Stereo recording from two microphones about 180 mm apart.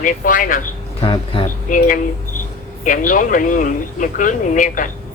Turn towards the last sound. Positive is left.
turn(degrees=45)  # may be behind; listen again after turning